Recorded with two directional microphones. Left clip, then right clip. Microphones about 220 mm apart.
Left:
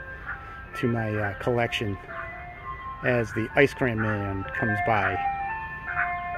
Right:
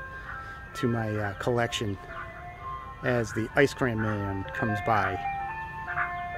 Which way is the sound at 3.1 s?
5° left (ahead or behind).